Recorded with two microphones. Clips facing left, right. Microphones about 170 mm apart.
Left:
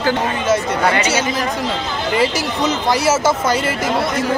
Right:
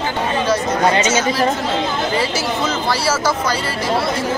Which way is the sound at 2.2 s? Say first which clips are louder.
Left 2 dB; 20° left (ahead or behind).